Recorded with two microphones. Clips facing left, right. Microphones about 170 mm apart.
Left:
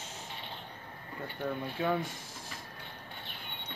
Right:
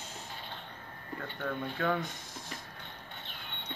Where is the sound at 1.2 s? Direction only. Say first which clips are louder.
Left 1 dB; 15° left (ahead or behind).